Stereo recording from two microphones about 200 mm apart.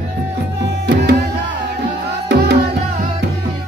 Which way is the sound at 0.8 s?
55° right (ahead or behind).